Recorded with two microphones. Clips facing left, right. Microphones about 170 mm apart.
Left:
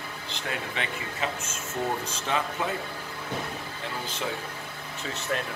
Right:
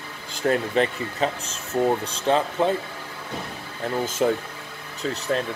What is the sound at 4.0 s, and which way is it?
Speech, 45° right (ahead or behind).